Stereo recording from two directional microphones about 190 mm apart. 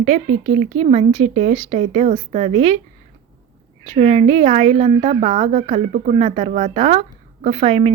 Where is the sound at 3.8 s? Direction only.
35° right (ahead or behind).